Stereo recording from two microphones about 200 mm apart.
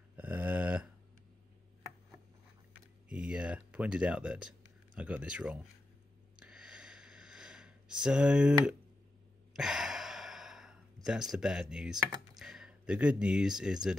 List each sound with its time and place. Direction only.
0.1 s a sound: 10° right (ahead or behind)
3.1 s speech: 5° right (ahead or behind)
6.4 s sniff: 5° right (ahead or behind)
9.5 s sigh: 5° right (ahead or behind)
11.1 s speech: 5° right (ahead or behind)